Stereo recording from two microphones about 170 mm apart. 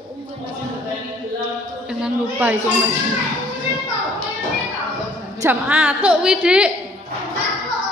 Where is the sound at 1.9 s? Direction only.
5° right (ahead or behind).